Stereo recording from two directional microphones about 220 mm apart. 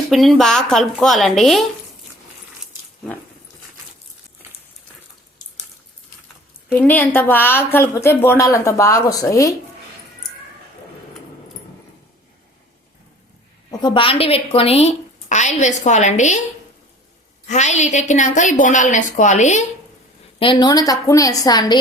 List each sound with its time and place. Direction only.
0.1 s a woman's voice: centre (ahead or behind)
6.8 s a woman's voice: 10° left (ahead or behind)
13.7 s a woman's voice: 20° left (ahead or behind)
17.4 s a woman's voice: 30° left (ahead or behind)
20.4 s a woman's voice: 20° left (ahead or behind)